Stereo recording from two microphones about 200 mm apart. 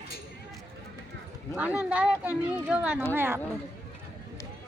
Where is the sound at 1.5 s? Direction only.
5° right (ahead or behind).